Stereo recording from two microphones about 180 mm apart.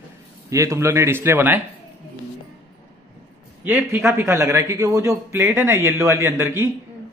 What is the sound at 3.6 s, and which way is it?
A man's voice, 10° right (ahead or behind).